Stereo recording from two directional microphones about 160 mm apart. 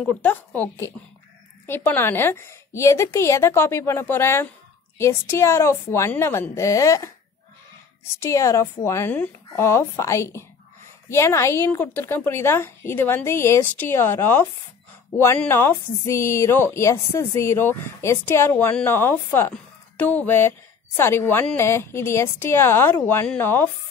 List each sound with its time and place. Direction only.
0.0 s a woman's voice: 10° left (ahead or behind)